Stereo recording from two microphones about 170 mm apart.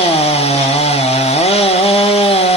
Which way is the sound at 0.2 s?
35° left (ahead or behind).